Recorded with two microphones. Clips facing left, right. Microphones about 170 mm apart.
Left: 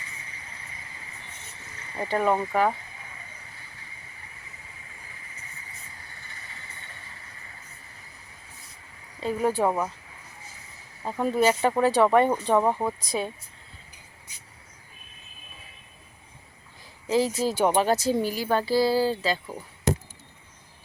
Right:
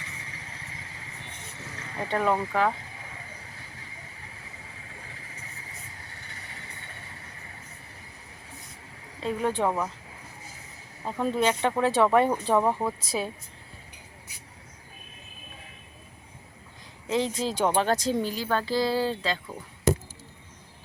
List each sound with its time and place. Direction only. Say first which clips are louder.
2.0 s speech: left 2 dB; 5° left (ahead or behind)
9.2 s speech: left 2 dB; 5° left (ahead or behind)
11.0 s speech: left 3 dB; 5° left (ahead or behind)
17.1 s speech: left 3 dB; 5° left (ahead or behind)